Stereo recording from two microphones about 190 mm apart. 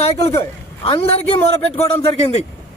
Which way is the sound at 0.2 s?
20° left (ahead or behind).